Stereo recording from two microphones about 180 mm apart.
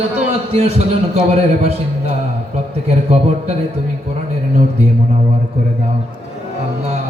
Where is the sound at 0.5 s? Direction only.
35° right (ahead or behind).